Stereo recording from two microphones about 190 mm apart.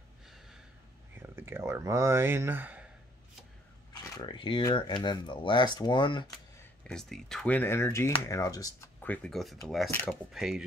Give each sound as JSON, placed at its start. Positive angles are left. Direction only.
{"t": 1.2, "sound": "speech", "side_deg": -10}
{"t": 3.9, "sound": "speech", "side_deg": 25}
{"t": 6.8, "sound": "speech", "side_deg": 5}